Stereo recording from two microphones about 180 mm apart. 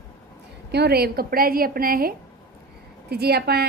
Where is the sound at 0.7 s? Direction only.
65° right (ahead or behind).